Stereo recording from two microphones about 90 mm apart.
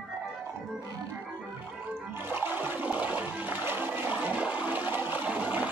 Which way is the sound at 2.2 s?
20° right (ahead or behind).